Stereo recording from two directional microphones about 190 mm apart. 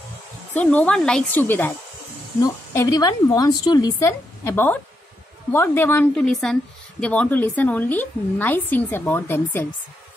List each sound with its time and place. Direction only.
0.6 s a woman's voice: 5° left (ahead or behind)